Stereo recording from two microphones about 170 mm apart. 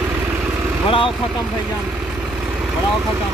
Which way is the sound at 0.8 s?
30° left (ahead or behind).